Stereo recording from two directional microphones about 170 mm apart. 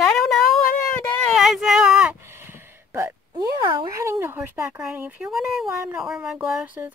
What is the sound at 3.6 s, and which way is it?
Speech, 30° right (ahead or behind).